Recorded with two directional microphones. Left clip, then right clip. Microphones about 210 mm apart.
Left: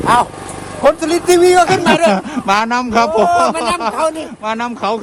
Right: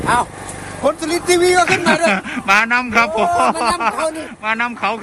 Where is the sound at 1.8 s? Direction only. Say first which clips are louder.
Left 3 dB; centre (ahead or behind).